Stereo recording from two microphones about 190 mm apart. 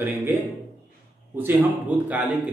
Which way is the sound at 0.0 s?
10° right (ahead or behind).